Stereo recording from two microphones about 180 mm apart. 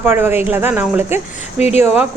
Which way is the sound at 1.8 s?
5° right (ahead or behind).